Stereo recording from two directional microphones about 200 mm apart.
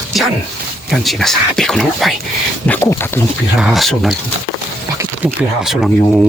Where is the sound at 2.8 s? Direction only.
10° left (ahead or behind).